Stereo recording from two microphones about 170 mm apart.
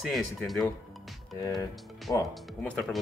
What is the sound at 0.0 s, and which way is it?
Speech, centre (ahead or behind).